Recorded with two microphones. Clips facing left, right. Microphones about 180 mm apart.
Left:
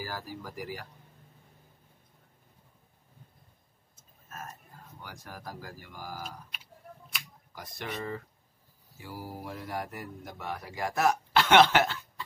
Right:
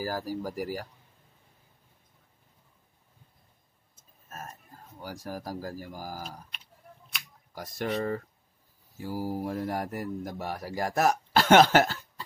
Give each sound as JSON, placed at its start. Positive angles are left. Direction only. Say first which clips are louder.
{"t": 0.0, "sound": "speech", "louder": "right 7 dB", "side_deg": -40}
{"t": 4.3, "sound": "speech", "louder": "right 1 dB", "side_deg": -40}
{"t": 6.5, "sound": "a sound", "louder": "left 3 dB", "side_deg": 0}
{"t": 7.5, "sound": "speech", "louder": "right 8 dB", "side_deg": -45}